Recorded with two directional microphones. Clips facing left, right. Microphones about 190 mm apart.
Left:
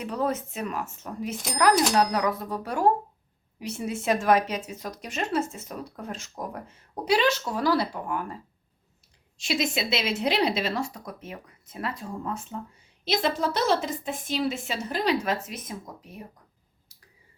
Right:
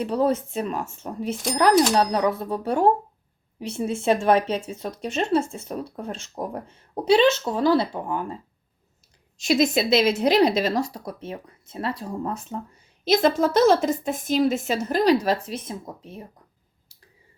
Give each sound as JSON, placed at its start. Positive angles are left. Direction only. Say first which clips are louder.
{"t": 0.0, "sound": "speech", "louder": "right 6 dB", "side_deg": -30}
{"t": 9.4, "sound": "a woman's voice", "louder": "right 7 dB", "side_deg": -40}
{"t": 16.9, "sound": "a sound", "louder": "right 4 dB", "side_deg": -30}